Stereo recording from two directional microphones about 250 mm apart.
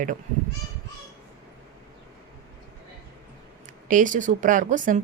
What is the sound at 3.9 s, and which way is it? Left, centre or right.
A woman's voice, right.